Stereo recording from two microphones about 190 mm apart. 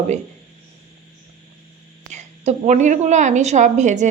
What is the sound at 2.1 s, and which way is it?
A woman's voice, 40° right (ahead or behind).